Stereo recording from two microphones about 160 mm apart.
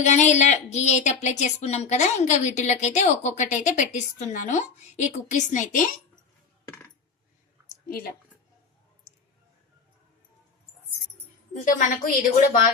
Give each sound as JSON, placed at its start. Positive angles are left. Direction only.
{"t": 0.0, "sound": "speech", "side_deg": 45}
{"t": 7.9, "sound": "a woman's voice", "side_deg": 65}
{"t": 11.5, "sound": "a woman's voice", "side_deg": 55}